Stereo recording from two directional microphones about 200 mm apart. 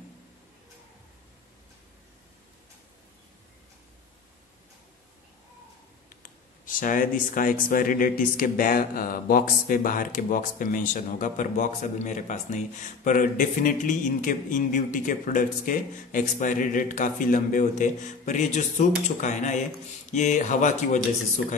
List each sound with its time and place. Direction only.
6.0 s speech: 45° left (ahead or behind)